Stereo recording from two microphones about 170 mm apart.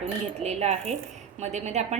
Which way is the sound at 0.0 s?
40° right (ahead or behind).